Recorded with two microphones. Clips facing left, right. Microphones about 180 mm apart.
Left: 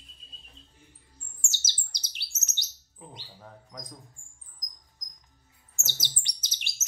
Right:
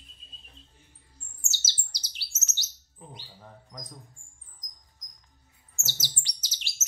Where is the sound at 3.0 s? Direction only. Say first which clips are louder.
Even; 5° right (ahead or behind).